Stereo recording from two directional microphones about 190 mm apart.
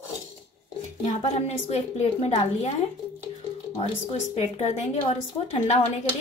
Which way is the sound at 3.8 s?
30° left (ahead or behind).